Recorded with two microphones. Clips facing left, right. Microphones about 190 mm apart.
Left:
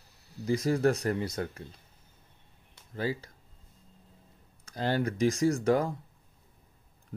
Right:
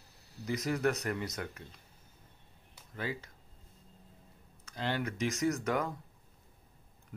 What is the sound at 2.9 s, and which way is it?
Speech, 35° left (ahead or behind).